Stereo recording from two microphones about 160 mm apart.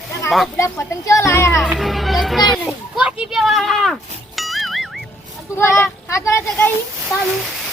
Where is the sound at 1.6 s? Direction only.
Centre (ahead or behind).